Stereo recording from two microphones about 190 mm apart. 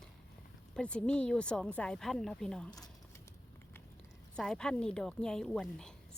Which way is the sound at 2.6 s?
20° left (ahead or behind).